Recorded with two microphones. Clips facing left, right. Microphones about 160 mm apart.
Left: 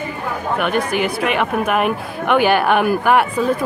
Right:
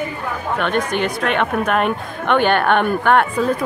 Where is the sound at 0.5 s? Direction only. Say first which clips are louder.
Left 1 dB; 10° left (ahead or behind).